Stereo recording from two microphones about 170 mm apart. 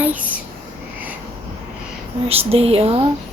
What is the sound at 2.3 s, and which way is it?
Speech, 35° right (ahead or behind).